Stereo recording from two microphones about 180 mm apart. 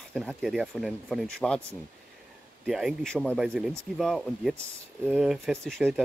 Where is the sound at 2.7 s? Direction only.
Centre (ahead or behind).